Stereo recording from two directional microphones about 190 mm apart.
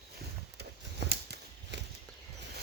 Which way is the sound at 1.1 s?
60° right (ahead or behind).